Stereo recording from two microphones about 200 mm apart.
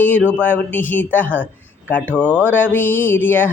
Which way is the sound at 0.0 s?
5° left (ahead or behind).